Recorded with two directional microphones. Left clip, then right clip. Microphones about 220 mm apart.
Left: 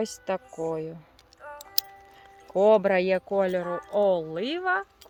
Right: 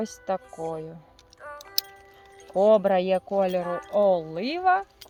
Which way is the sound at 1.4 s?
35° right (ahead or behind).